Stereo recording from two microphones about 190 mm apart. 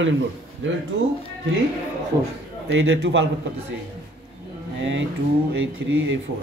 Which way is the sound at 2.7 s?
80° right.